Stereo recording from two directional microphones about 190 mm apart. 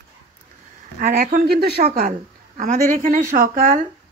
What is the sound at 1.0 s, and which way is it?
A woman's voice, 50° right (ahead or behind).